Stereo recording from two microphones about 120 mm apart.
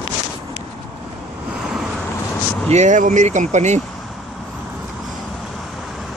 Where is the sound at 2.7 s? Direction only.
80° right.